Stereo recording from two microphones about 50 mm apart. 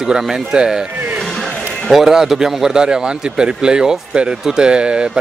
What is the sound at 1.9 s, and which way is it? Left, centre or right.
A man's voice, centre.